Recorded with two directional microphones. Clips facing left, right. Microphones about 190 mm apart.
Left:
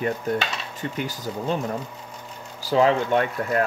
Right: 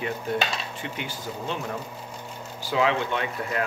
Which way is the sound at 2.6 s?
40° left (ahead or behind).